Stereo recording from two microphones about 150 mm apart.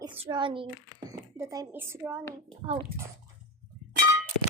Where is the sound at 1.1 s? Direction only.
20° right (ahead or behind).